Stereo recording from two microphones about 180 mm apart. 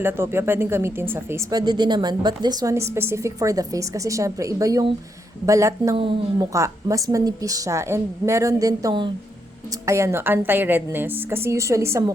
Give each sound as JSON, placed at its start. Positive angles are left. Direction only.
{"t": 0.0, "sound": "speech", "side_deg": -10}
{"t": 6.0, "sound": "a woman's voice", "side_deg": -30}
{"t": 6.5, "sound": "a woman's voice", "side_deg": -15}